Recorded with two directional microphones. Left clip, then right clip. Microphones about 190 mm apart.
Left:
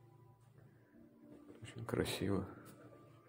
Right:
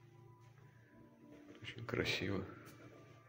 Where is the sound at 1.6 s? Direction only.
30° left (ahead or behind).